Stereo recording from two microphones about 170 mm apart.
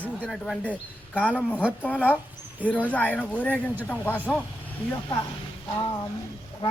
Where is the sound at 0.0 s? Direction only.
5° left (ahead or behind).